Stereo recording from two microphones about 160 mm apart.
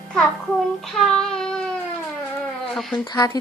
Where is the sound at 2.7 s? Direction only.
5° left (ahead or behind).